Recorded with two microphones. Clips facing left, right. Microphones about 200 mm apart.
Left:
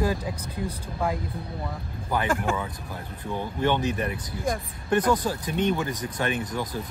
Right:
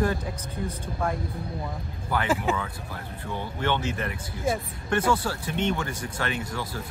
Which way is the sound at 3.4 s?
15° left (ahead or behind).